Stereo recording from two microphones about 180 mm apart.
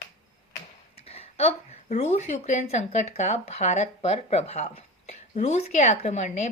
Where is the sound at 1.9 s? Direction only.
40° left (ahead or behind).